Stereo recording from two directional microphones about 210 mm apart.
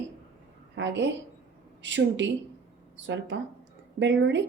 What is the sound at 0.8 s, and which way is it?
Speech, 60° right (ahead or behind).